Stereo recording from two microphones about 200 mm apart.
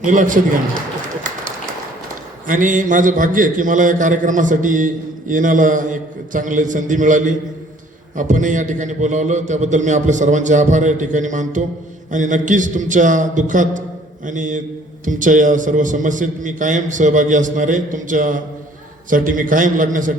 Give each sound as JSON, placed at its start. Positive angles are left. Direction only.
{"t": 0.0, "sound": "a man's voice", "side_deg": -40}
{"t": 2.5, "sound": "a man's voice", "side_deg": -40}